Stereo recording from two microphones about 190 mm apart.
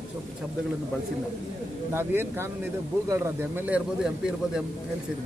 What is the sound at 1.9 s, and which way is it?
A man's voice, 10° right (ahead or behind).